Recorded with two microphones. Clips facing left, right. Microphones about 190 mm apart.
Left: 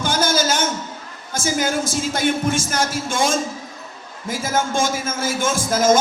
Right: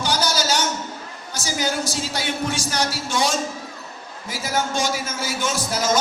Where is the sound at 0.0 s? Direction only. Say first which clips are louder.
Left 3 dB; 50° left (ahead or behind).